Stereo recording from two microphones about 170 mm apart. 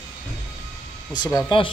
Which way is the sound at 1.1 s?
25° left (ahead or behind).